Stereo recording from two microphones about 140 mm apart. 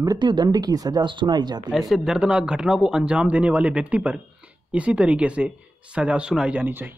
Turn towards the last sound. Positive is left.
turn(degrees=-15)  # may be behind; listen again after turning